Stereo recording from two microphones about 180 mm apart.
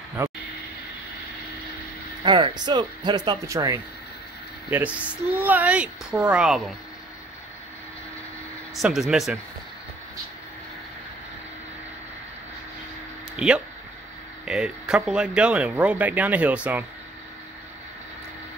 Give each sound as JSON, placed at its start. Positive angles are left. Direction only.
{"t": 0.2, "sound": "speech", "side_deg": -15}
{"t": 2.2, "sound": "speech", "side_deg": -25}
{"t": 8.7, "sound": "speech", "side_deg": 0}
{"t": 13.4, "sound": "speech", "side_deg": -5}